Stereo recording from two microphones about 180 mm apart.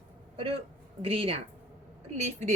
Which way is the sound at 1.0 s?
30° right (ahead or behind).